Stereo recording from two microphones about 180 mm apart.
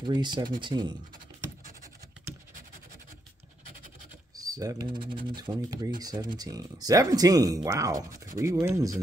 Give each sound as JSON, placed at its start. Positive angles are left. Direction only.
{"t": 0.0, "sound": "speech", "side_deg": -25}
{"t": 4.4, "sound": "speech", "side_deg": -20}